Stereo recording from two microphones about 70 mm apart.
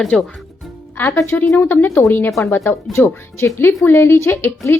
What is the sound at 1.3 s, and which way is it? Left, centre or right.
Speech, left.